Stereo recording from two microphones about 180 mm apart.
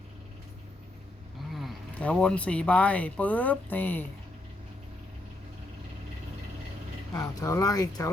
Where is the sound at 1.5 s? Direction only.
Centre (ahead or behind).